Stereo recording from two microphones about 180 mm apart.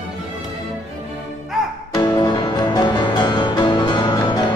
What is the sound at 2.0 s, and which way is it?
Music, 25° left (ahead or behind).